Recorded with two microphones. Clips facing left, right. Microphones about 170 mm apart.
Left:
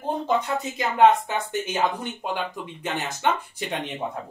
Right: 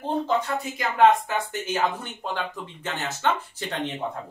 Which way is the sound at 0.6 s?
20° left (ahead or behind).